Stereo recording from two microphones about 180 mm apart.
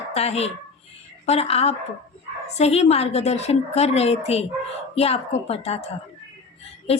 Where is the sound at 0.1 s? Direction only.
35° left (ahead or behind).